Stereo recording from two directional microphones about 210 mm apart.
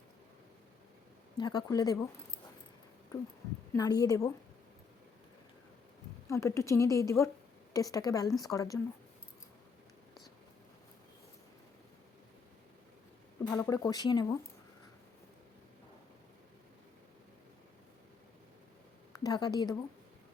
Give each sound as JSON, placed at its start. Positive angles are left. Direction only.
{"t": 1.4, "sound": "a woman's voice", "side_deg": 20}
{"t": 3.7, "sound": "a woman's voice", "side_deg": 20}
{"t": 6.2, "sound": "a woman's voice", "side_deg": 15}
{"t": 13.5, "sound": "a woman's voice", "side_deg": 15}
{"t": 19.2, "sound": "speech", "side_deg": 20}